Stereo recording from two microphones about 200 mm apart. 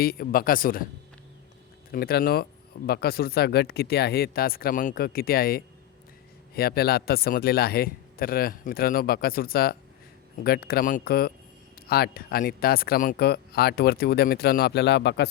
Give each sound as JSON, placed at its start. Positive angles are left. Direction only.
{"t": 0.0, "sound": "speech", "side_deg": 45}
{"t": 1.9, "sound": "speech", "side_deg": 50}